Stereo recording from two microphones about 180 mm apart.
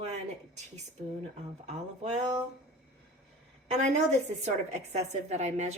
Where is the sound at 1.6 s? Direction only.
40° right (ahead or behind).